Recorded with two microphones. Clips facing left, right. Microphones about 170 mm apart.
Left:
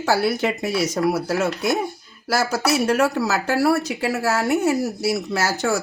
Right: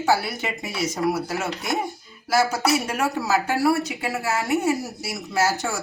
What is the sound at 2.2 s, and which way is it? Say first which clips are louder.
Speech: even; 80° left.